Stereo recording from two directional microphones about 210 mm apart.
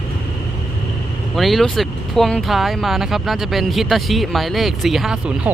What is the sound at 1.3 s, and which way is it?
Speech, centre (ahead or behind).